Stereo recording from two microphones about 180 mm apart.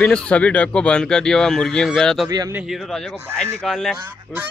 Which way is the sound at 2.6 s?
Centre (ahead or behind).